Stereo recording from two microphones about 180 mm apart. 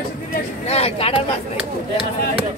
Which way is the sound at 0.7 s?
35° left (ahead or behind).